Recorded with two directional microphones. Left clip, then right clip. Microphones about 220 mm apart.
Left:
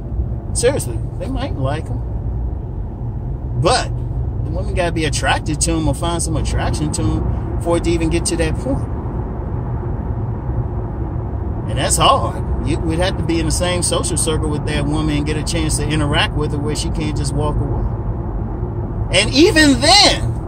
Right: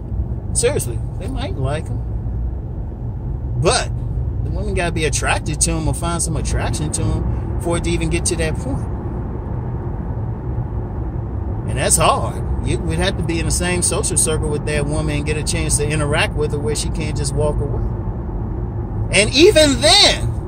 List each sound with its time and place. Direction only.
0.6 s speech: 15° right (ahead or behind)
4.7 s speech: 15° right (ahead or behind)
11.7 s speech: 15° right (ahead or behind)
19.1 s speech: 15° right (ahead or behind)